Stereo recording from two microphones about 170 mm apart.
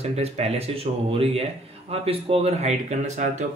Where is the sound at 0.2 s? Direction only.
35° right (ahead or behind).